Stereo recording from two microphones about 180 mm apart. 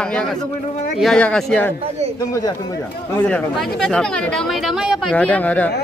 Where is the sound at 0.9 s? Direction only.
5° left (ahead or behind).